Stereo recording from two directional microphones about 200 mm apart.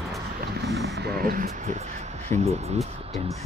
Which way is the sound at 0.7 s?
55° right (ahead or behind).